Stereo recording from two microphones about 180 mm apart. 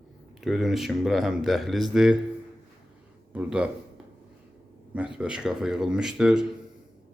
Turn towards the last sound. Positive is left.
turn(degrees=-5)  # may be behind; listen again after turning